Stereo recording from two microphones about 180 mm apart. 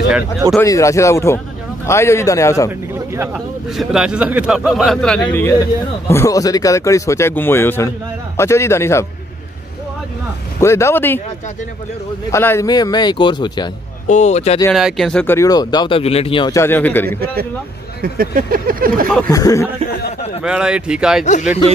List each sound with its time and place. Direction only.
0.6 s speech: 15° left (ahead or behind)
3.3 s speech: centre (ahead or behind); by 9.0 s 15° left (ahead or behind)
10.6 s speech: 15° left (ahead or behind)
12.3 s speech: 15° left (ahead or behind)
14.0 s speech: 40° left (ahead or behind)
14.7 s speech: centre (ahead or behind); by 16.6 s 25° left (ahead or behind)
16.6 s speech: 10° left (ahead or behind)
18.0 s a sound: 55° right (ahead or behind)
19.2 s speech: 20° left (ahead or behind)
20.4 s a man's voice: 5° right (ahead or behind)
21.2 s speech: 40° left (ahead or behind)